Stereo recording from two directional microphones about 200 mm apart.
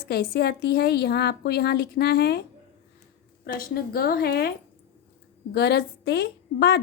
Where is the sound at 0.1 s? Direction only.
50° left (ahead or behind).